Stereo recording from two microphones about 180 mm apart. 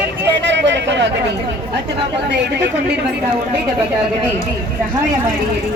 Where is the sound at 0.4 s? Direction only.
80° right.